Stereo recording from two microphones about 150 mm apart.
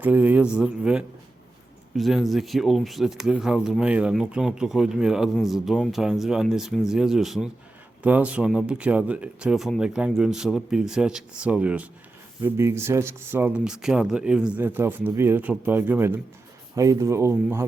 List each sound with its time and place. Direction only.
0.0 s speech: 10° right (ahead or behind)